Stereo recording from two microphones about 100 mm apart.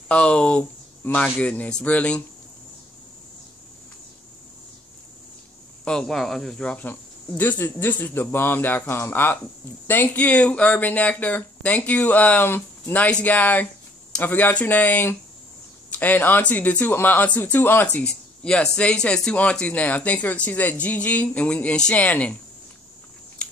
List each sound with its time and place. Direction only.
0.1 s speech: 10° left (ahead or behind)
5.9 s speech: 5° left (ahead or behind)
6.9 s speech: 20° left (ahead or behind)
18.0 s speech: 10° left (ahead or behind)